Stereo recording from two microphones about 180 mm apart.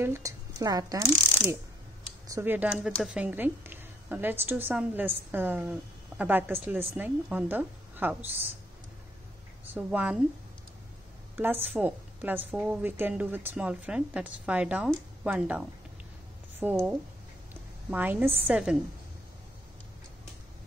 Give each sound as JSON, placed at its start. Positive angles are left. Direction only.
{"t": 0.0, "sound": "speech", "side_deg": -15}
{"t": 2.2, "sound": "a woman's voice", "side_deg": -15}
{"t": 9.7, "sound": "a woman's voice", "side_deg": -10}
{"t": 11.3, "sound": "a woman's voice", "side_deg": -10}
{"t": 16.6, "sound": "a woman's voice", "side_deg": -10}
{"t": 17.8, "sound": "a woman's voice", "side_deg": -10}